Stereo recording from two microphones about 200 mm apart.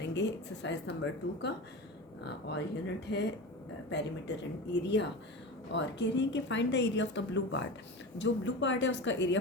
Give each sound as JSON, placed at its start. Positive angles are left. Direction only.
{"t": 0.0, "sound": "a woman's voice", "side_deg": 60}
{"t": 2.2, "sound": "a woman's voice", "side_deg": 60}